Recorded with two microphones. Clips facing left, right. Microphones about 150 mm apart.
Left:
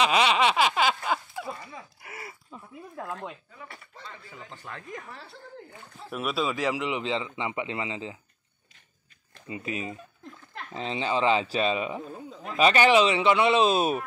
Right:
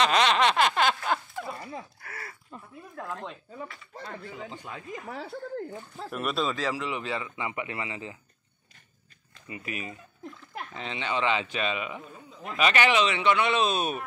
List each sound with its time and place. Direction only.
0.0 s a sound: 5° left (ahead or behind)
2.0 s a sound: 20° left (ahead or behind)
3.9 s a man's voice: 55° right (ahead or behind)
4.6 s speech: 10° right (ahead or behind)
5.0 s speech: 65° right (ahead or behind)
6.0 s speech: centre (ahead or behind)
6.5 s a man's voice: 15° left (ahead or behind)
9.5 s a man's voice: 25° left (ahead or behind)